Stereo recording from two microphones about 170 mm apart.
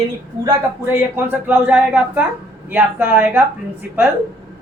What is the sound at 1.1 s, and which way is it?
A man's voice, 10° right (ahead or behind).